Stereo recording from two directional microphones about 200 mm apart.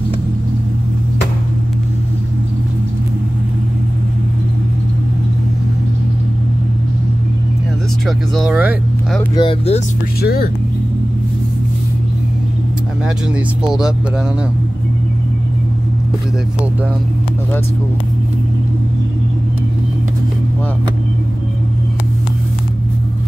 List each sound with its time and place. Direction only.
8.4 s speech: 5° right (ahead or behind)
9.3 s speech: 25° left (ahead or behind)
10.2 s speech: 50° left (ahead or behind)
13.7 s speech: 5° right (ahead or behind)